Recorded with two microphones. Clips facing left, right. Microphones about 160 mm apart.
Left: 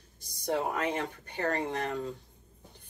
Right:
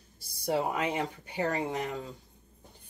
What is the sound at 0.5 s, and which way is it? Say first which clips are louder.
Speech: right 1 dB; 10° right (ahead or behind).